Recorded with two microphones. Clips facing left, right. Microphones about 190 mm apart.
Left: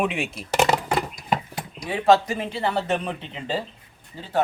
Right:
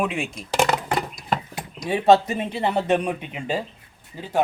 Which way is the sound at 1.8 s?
25° right (ahead or behind).